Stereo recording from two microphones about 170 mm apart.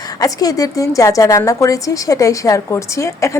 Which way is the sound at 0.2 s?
20° left (ahead or behind).